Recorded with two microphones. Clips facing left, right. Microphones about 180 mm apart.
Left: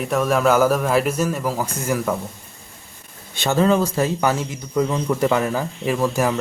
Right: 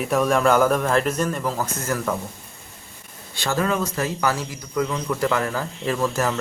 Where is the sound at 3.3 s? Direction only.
20° left (ahead or behind).